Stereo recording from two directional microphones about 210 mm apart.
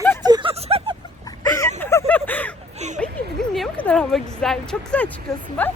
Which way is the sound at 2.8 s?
35° right (ahead or behind).